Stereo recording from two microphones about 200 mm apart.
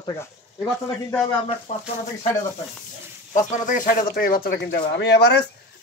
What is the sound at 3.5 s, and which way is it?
Speech, 40° left (ahead or behind).